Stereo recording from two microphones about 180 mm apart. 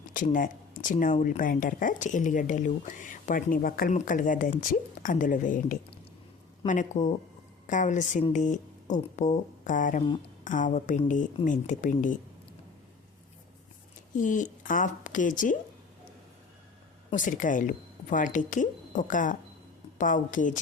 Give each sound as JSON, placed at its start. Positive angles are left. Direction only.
{"t": 0.1, "sound": "speech", "side_deg": 45}
{"t": 14.2, "sound": "speech", "side_deg": 45}
{"t": 17.2, "sound": "speech", "side_deg": 45}